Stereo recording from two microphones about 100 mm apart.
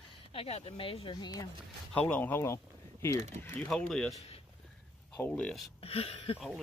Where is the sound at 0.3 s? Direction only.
80° left; by 1.1 s 60° left (ahead or behind).